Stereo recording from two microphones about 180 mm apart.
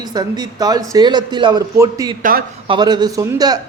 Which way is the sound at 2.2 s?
55° right (ahead or behind).